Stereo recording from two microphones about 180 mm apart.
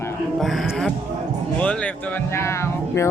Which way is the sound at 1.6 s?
5° left (ahead or behind).